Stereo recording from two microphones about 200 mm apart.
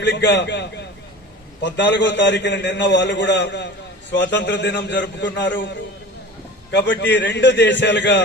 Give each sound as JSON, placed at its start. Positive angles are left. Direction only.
{"t": 0.0, "sound": "a man's voice", "side_deg": 65}
{"t": 6.7, "sound": "a man's voice", "side_deg": 60}